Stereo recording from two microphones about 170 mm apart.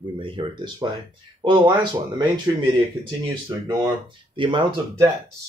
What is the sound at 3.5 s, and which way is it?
Speech, 25° right (ahead or behind).